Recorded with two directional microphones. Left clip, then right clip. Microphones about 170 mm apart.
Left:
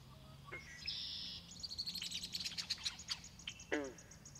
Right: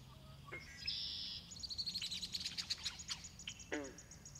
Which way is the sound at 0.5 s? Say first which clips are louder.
Right 1 dB; 20° right (ahead or behind).